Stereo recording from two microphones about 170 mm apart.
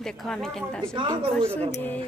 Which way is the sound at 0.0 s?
5° left (ahead or behind).